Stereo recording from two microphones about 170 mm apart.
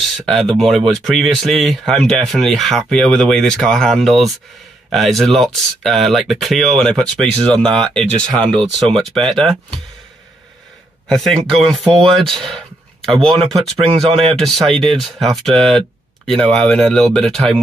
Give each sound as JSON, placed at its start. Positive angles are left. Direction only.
{"t": 0.3, "sound": "speech", "side_deg": 0}
{"t": 11.1, "sound": "speech", "side_deg": 0}
{"t": 13.8, "sound": "speech", "side_deg": -35}
{"t": 14.4, "sound": "speech", "side_deg": 0}